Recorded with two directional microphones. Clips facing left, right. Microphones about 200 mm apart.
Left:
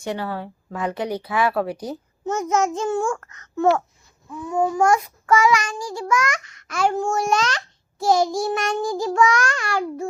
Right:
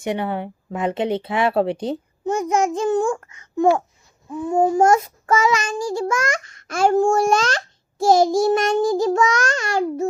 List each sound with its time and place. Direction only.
0.0 s speech: 20° right (ahead or behind)
2.2 s a child's voice: 15° right (ahead or behind)
4.3 s a child's voice: 30° right (ahead or behind)
7.4 s a sound: 45° right (ahead or behind)
8.4 s a child's voice: 40° right (ahead or behind)
8.8 s speech: 25° right (ahead or behind)